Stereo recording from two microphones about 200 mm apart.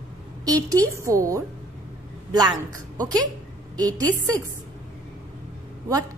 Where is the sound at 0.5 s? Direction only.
15° right (ahead or behind).